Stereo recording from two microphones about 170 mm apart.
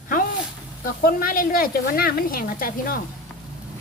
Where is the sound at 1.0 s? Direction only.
55° left (ahead or behind).